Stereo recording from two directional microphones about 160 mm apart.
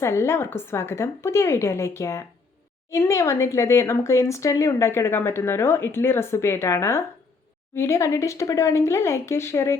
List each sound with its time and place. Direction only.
0.0 s speech: 15° left (ahead or behind)